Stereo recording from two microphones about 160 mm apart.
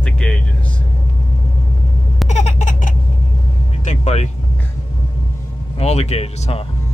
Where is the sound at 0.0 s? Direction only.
5° left (ahead or behind).